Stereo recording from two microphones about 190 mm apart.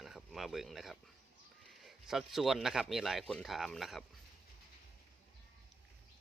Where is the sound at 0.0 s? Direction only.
Centre (ahead or behind).